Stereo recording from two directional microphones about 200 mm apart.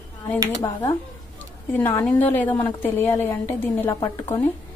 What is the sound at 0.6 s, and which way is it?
A woman's voice, 15° left (ahead or behind).